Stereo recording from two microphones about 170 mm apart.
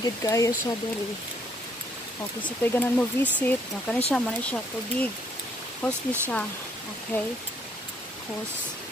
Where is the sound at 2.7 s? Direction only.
10° left (ahead or behind).